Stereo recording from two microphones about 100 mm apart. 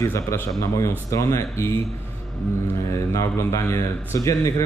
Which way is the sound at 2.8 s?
30° left (ahead or behind).